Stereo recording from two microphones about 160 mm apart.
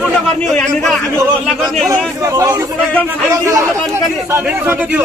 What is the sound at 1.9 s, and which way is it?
Speech, 20° right (ahead or behind).